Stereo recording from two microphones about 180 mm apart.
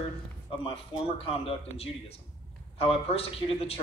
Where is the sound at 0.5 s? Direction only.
30° left (ahead or behind).